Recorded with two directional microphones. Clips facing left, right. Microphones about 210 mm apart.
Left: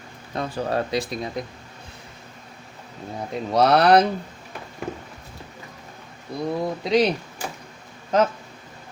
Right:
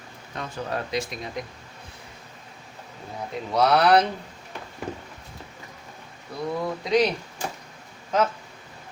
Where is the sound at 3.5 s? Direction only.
40° left (ahead or behind).